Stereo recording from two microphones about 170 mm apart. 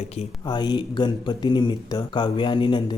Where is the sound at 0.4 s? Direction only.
25° left (ahead or behind).